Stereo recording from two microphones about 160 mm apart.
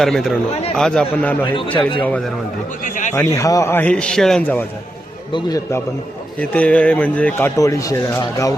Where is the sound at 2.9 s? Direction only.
50° left (ahead or behind).